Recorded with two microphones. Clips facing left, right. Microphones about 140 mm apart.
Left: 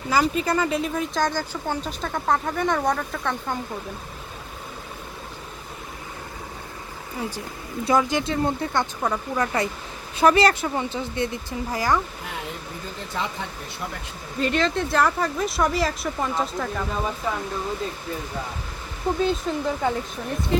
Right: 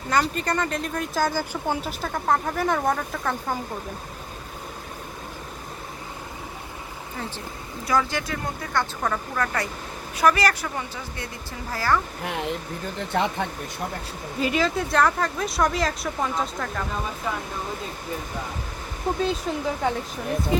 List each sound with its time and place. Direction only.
0.1 s speech: 5° left (ahead or behind)
7.2 s speech: 10° left (ahead or behind)
13.1 s speech: 60° right (ahead or behind)
14.3 s speech: 5° right (ahead or behind)
19.2 s speech: centre (ahead or behind)